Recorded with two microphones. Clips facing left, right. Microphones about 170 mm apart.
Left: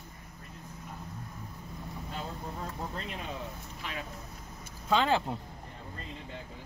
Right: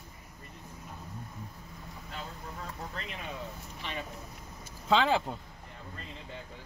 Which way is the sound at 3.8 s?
Centre (ahead or behind).